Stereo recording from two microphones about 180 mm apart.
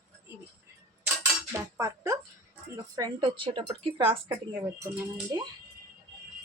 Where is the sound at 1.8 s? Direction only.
15° right (ahead or behind).